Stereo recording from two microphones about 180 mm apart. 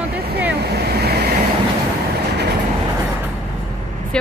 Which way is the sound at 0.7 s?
60° right (ahead or behind).